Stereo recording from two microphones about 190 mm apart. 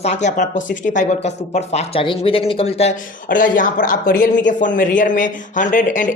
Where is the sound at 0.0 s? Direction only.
35° left (ahead or behind).